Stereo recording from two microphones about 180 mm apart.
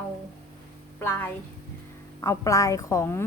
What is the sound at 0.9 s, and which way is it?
A woman's voice, 10° left (ahead or behind).